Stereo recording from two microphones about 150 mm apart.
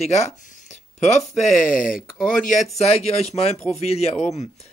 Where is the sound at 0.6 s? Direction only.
45° left (ahead or behind).